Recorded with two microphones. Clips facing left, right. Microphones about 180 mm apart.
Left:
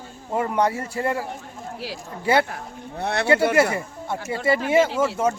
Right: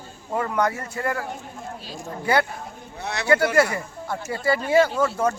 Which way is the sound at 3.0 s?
55° left (ahead or behind).